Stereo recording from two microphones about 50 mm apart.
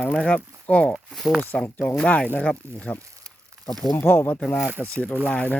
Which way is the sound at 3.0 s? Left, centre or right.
Right.